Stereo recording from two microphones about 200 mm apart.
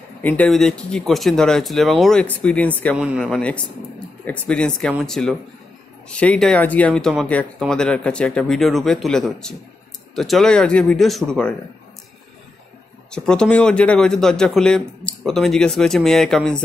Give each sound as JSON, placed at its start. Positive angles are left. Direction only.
{"t": 0.2, "sound": "speech", "side_deg": 10}
{"t": 13.1, "sound": "speech", "side_deg": 5}